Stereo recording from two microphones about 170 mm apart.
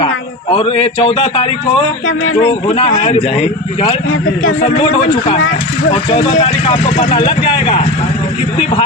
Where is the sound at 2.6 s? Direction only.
35° left (ahead or behind).